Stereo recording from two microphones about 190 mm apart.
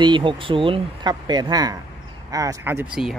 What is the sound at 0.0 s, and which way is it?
Speech, 25° right (ahead or behind).